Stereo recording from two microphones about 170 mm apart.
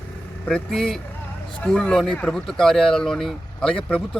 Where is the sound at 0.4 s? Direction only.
Centre (ahead or behind).